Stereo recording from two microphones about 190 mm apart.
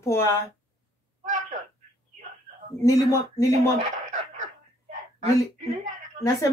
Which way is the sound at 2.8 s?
15° left (ahead or behind).